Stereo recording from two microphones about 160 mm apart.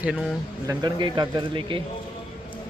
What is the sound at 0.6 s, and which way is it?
Speech, 25° right (ahead or behind).